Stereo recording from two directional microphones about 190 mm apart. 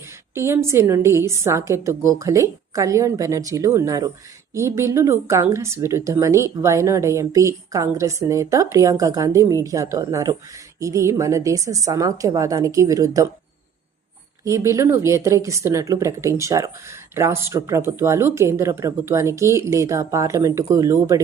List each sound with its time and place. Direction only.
0.3 s a woman's voice: 15° right (ahead or behind)
14.4 s a woman's voice: 15° right (ahead or behind)